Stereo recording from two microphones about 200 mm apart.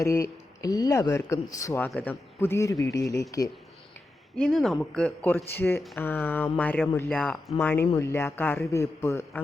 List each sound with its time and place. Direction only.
0.0 s speech: 15° left (ahead or behind)
4.4 s speech: centre (ahead or behind)